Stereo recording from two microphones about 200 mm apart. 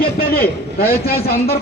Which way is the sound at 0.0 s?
50° left (ahead or behind).